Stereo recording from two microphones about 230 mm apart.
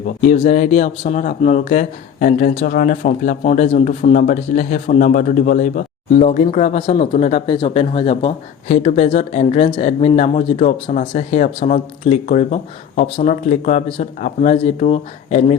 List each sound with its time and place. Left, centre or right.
0.3 s speech: left